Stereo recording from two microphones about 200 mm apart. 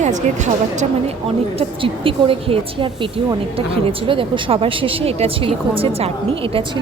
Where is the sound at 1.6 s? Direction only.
25° right (ahead or behind).